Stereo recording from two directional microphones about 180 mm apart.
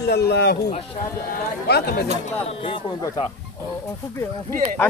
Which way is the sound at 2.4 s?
30° left (ahead or behind).